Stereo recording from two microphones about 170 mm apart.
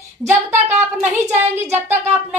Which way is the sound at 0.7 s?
10° right (ahead or behind).